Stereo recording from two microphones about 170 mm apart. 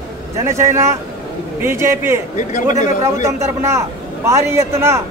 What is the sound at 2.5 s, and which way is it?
Speech, 45° left (ahead or behind).